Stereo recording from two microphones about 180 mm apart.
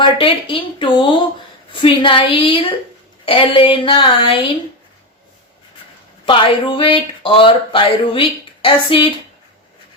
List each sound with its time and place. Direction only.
0.0 s speech: 30° left (ahead or behind)
6.2 s speech: 30° left (ahead or behind)